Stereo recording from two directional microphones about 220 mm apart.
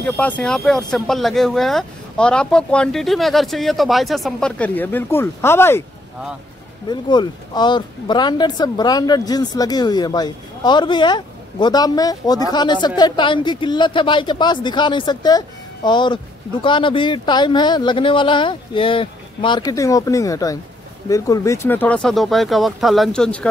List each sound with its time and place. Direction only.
0.0 s speech: 5° left (ahead or behind)
6.9 s speech: 20° left (ahead or behind)